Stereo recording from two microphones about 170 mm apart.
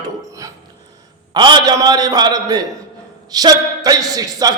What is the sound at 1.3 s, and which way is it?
A man's voice, 25° right (ahead or behind).